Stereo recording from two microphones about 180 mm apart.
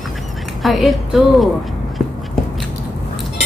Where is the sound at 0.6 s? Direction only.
Centre (ahead or behind).